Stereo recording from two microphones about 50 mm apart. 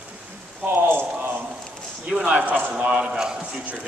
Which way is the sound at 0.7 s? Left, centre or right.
Right.